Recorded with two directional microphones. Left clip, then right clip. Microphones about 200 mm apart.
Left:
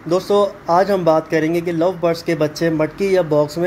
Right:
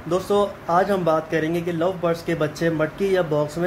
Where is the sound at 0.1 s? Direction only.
30° left (ahead or behind).